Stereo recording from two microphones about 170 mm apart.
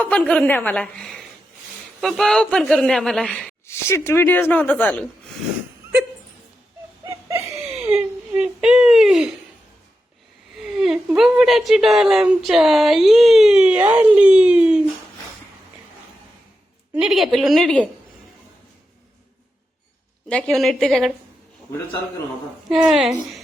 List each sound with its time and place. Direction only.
0.0 s speech: 5° left (ahead or behind)
7.0 s wheeze: 20° right (ahead or behind)
7.8 s speech: 10° right (ahead or behind)
10.6 s speech: 5° right (ahead or behind)
16.9 s speech: 5° right (ahead or behind)
20.2 s speech: 5° left (ahead or behind)
22.7 s speech: 5° right (ahead or behind)